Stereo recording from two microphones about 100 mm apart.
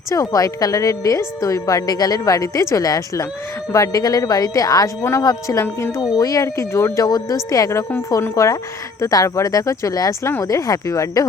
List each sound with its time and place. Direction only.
0.1 s a woman's voice: 35° left (ahead or behind)
5.6 s speech: 25° left (ahead or behind)
6.1 s a woman's voice: 35° left (ahead or behind)